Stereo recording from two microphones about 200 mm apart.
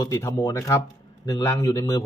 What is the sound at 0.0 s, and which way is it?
Speech, 15° left (ahead or behind).